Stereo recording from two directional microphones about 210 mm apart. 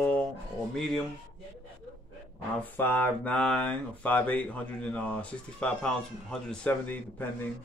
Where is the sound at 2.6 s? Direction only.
10° left (ahead or behind).